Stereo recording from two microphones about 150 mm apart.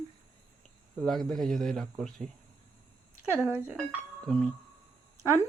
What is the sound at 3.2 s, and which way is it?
Speech, 15° right (ahead or behind).